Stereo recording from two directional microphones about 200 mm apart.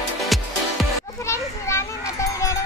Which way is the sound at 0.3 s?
Centre (ahead or behind).